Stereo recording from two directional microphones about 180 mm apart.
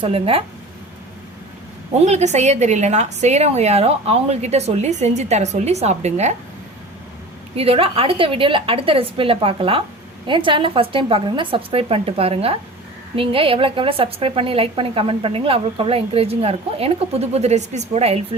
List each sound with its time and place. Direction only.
0.0 s a woman's voice: 30° right (ahead or behind)
2.0 s a woman's voice: 40° right (ahead or behind)
7.5 s a woman's voice: 30° right (ahead or behind)